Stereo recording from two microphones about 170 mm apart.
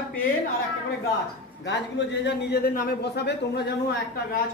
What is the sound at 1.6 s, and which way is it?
A man's voice, 90° left.